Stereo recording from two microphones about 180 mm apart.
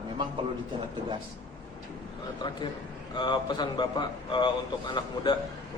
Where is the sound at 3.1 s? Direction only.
25° left (ahead or behind).